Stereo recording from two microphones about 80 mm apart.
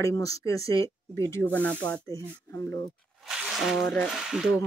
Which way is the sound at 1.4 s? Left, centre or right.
Left.